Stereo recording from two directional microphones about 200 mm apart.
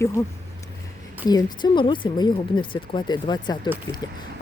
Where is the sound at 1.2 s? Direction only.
20° left (ahead or behind).